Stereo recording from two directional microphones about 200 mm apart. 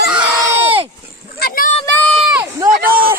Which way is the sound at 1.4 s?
45° left (ahead or behind).